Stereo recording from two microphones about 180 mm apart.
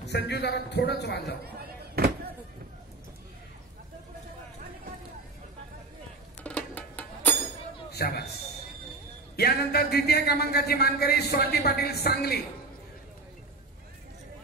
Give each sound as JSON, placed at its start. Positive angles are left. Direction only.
{"t": 0.1, "sound": "a man's voice", "side_deg": 65}
{"t": 1.4, "sound": "a sound", "side_deg": -60}
{"t": 6.4, "sound": "music", "side_deg": 10}
{"t": 8.0, "sound": "a man's voice", "side_deg": 60}
{"t": 9.4, "sound": "a man's voice", "side_deg": 60}